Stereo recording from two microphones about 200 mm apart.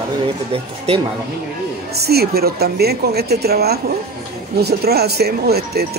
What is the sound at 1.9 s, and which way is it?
Speech, 50° right (ahead or behind).